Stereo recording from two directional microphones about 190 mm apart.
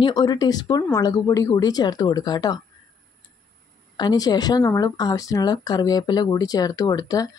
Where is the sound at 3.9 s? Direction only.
20° left (ahead or behind).